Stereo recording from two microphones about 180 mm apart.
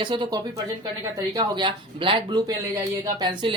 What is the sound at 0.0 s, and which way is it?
Speech, 25° right (ahead or behind).